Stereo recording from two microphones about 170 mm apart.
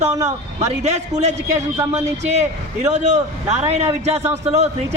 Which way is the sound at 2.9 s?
45° right (ahead or behind).